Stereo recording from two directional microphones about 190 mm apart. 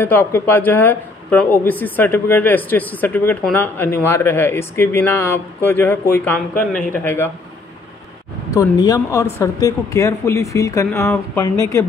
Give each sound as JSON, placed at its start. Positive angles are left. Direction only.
{"t": 0.0, "sound": "speech", "side_deg": 10}
{"t": 8.5, "sound": "speech", "side_deg": 15}